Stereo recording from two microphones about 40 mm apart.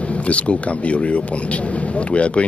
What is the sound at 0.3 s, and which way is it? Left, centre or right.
Speech, left.